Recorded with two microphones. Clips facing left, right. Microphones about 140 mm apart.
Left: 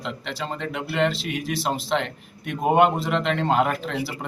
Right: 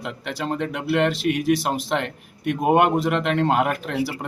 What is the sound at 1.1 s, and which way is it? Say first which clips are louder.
Speech: right 8 dB; 55° right (ahead or behind).